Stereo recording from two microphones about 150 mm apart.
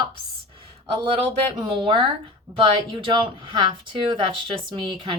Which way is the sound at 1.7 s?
35° right (ahead or behind).